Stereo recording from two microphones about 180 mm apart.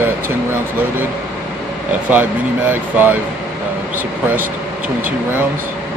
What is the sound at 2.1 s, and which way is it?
Speech, 10° right (ahead or behind).